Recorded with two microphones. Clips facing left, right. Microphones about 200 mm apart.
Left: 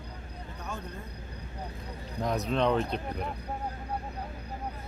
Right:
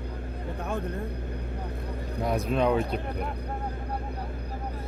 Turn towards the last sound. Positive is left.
turn(degrees=-5)  # may be behind; listen again after turning